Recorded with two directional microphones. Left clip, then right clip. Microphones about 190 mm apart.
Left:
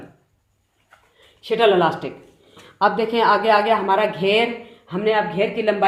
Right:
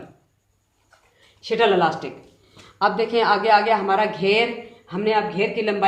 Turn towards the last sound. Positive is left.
turn(degrees=60)  # may be behind; listen again after turning